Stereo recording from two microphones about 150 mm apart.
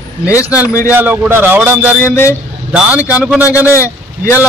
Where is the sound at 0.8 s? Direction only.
10° right (ahead or behind).